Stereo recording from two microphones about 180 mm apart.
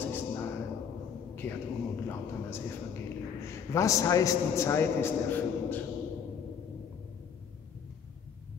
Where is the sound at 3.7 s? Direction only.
15° left (ahead or behind).